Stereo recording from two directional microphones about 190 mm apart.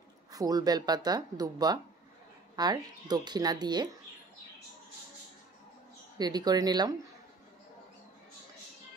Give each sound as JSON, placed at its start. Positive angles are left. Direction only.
{"t": 0.3, "sound": "speech", "side_deg": -20}
{"t": 6.1, "sound": "speech", "side_deg": -20}